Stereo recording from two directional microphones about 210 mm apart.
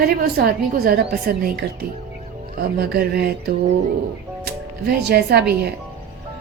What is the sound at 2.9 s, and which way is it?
Speech, 50° right (ahead or behind).